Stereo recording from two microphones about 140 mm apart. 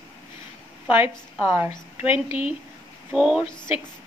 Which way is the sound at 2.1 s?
45° left (ahead or behind).